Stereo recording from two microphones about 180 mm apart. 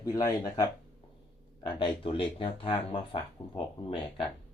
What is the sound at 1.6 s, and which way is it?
A man's voice, 30° left (ahead or behind).